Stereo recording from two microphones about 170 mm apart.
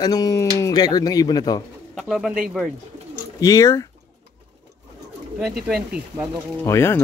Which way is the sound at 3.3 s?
20° left (ahead or behind).